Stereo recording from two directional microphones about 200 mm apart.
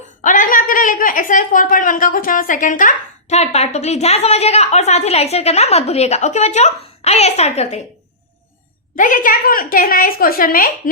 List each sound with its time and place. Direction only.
0.2 s a woman's voice: 40° left (ahead or behind)
9.0 s a woman's voice: 40° left (ahead or behind)